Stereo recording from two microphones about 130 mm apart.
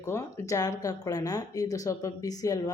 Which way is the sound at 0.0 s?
20° left (ahead or behind).